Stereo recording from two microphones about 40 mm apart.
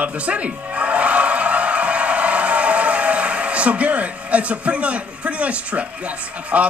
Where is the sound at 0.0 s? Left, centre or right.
Right.